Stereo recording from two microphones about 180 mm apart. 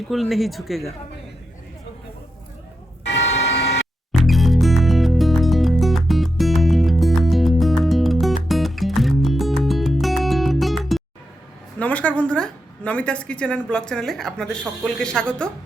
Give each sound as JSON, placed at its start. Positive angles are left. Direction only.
{"t": 0.1, "sound": "speech", "side_deg": 0}
{"t": 3.1, "sound": "a sound", "side_deg": 70}
{"t": 4.2, "sound": "music", "side_deg": 0}
{"t": 11.8, "sound": "a woman's voice", "side_deg": 10}